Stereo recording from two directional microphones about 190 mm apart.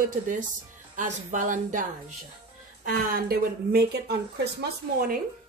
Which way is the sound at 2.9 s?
50° right (ahead or behind).